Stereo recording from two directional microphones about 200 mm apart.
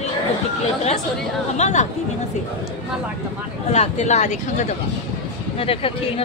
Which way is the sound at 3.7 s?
35° left (ahead or behind).